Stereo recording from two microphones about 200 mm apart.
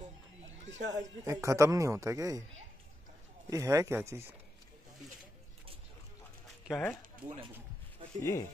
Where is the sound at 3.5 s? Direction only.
15° right (ahead or behind).